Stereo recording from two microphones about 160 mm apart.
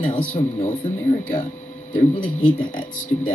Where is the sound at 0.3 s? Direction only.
50° left (ahead or behind).